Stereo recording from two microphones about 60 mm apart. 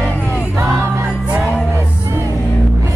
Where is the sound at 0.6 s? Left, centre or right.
Right.